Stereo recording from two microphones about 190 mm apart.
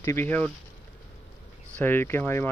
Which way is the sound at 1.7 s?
10° left (ahead or behind).